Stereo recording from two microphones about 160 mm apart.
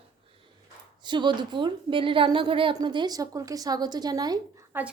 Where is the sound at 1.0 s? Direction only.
30° right (ahead or behind).